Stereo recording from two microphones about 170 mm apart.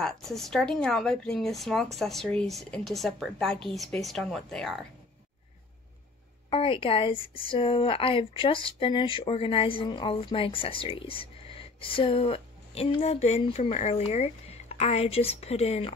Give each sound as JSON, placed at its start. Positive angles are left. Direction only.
{"t": 0.0, "sound": "speech", "side_deg": 0}
{"t": 6.5, "sound": "speech", "side_deg": 30}